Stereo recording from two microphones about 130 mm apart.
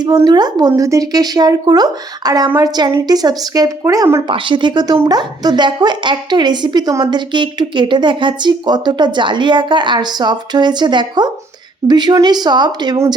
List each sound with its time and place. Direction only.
0.3 s a woman's voice: 35° right (ahead or behind)
4.3 s a woman's voice: 40° right (ahead or behind)